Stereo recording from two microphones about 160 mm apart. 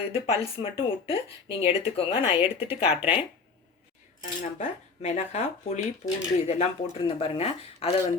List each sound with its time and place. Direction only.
0.0 s speech: 40° left (ahead or behind)
4.2 s speech: 50° left (ahead or behind)